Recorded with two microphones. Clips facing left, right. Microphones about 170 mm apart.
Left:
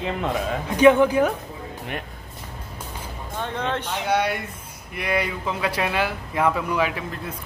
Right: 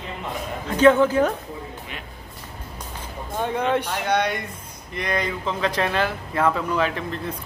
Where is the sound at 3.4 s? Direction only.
10° right (ahead or behind).